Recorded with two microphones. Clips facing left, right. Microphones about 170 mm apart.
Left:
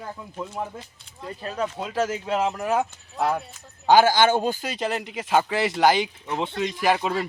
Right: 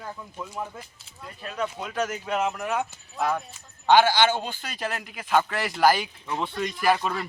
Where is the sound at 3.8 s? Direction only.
40° left (ahead or behind).